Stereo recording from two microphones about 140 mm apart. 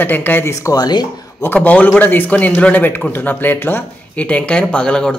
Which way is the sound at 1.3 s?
10° left (ahead or behind).